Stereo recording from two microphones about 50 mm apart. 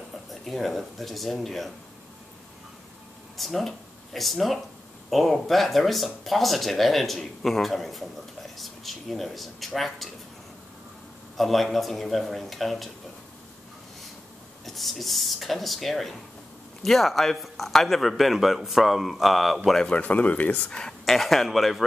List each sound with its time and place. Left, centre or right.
0.3 s speech: centre
3.3 s speech: centre
11.3 s speech: centre
14.6 s speech: centre
19.9 s speech: left
21.0 s speech: centre